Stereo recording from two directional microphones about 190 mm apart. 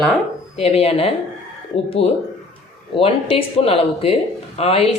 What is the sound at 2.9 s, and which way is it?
Speech, 30° left (ahead or behind).